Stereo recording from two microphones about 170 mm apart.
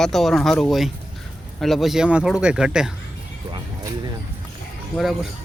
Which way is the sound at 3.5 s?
25° right (ahead or behind).